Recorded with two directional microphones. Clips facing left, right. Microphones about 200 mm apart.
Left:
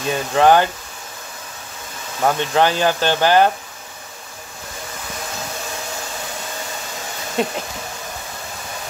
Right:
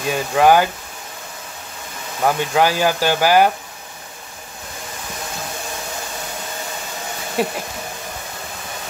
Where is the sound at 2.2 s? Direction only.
10° right (ahead or behind).